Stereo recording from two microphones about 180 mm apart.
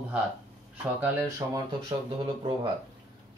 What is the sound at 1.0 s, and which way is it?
Speech, 15° right (ahead or behind).